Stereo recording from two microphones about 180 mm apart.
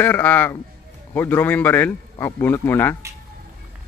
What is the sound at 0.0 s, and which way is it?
Speech, 10° left (ahead or behind).